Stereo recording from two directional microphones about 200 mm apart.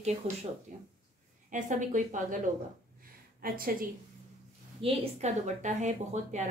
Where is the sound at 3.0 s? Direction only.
45° right (ahead or behind).